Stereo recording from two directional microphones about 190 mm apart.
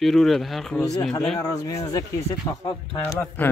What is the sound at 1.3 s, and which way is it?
Speech, 15° left (ahead or behind).